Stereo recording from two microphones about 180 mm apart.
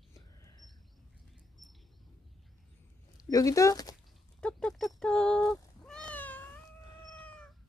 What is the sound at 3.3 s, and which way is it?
Speech, 20° left (ahead or behind).